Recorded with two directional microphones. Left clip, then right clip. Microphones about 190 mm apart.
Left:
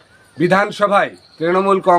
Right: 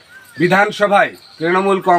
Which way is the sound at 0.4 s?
10° left (ahead or behind).